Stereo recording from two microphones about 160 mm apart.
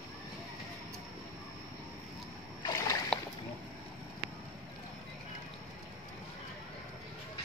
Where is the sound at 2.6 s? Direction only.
25° left (ahead or behind).